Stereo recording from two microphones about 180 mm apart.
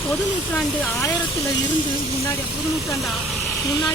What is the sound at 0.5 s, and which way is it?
Speech, 10° left (ahead or behind).